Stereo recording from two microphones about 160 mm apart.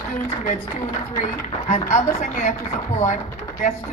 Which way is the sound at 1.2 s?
50° left (ahead or behind).